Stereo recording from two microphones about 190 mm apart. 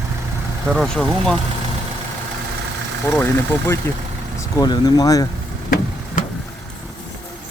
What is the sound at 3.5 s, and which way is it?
Speech, 10° left (ahead or behind).